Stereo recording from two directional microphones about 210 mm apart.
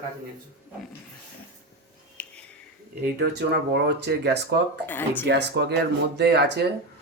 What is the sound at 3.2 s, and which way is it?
Speech, 55° right (ahead or behind).